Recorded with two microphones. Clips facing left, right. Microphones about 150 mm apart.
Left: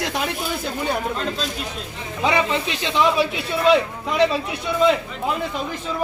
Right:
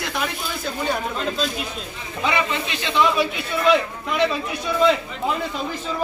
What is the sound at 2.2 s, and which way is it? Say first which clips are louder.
Speech: left 3 dB; 30° left (ahead or behind).